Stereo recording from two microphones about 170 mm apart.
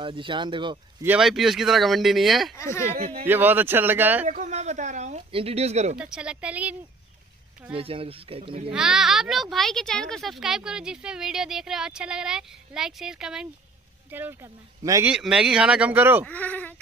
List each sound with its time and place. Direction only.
0.0 s speech: 30° right (ahead or behind)
1.0 s speech: 5° right (ahead or behind)
2.5 s speech: 15° left (ahead or behind)
2.9 s speech: 40° right (ahead or behind)
3.3 s speech: 10° right (ahead or behind)
4.3 s speech: 45° right (ahead or behind)
5.9 s speech: 5° right (ahead or behind)
7.7 s speech: 35° right (ahead or behind)
8.7 s speech: 5° right (ahead or behind)
14.1 s speech: 15° right (ahead or behind)
15.0 s speech: 5° right (ahead or behind)
16.3 s speech: 10° left (ahead or behind)